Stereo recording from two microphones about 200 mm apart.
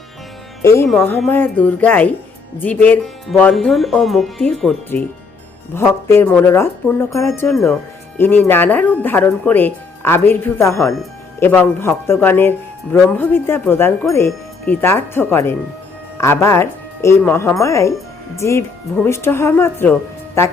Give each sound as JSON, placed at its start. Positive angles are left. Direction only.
{"t": 0.6, "sound": "speech", "side_deg": 15}